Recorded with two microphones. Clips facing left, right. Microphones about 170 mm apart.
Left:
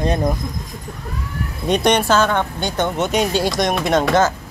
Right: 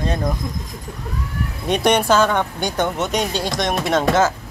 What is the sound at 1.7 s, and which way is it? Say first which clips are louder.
Speech: even; 5° right (ahead or behind).